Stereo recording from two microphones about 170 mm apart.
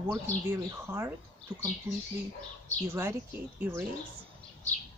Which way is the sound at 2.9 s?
15° right (ahead or behind).